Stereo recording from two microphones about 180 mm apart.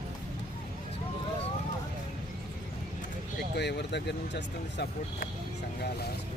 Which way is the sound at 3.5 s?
70° left (ahead or behind).